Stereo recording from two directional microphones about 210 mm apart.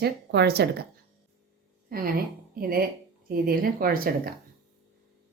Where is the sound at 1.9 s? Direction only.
45° right (ahead or behind).